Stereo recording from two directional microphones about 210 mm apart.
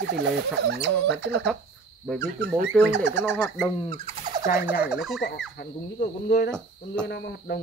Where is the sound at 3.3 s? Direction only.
10° left (ahead or behind).